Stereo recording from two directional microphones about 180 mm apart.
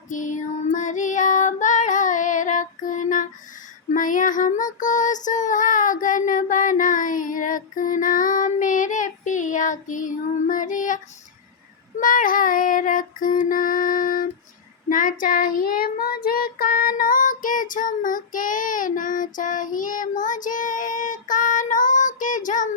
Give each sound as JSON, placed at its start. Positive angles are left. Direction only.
{"t": 0.1, "sound": "child singing", "side_deg": 45}
{"t": 11.9, "sound": "female singing", "side_deg": 50}
{"t": 14.8, "sound": "child singing", "side_deg": 45}